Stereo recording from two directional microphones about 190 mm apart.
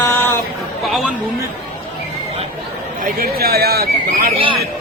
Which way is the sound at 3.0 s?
50° right (ahead or behind).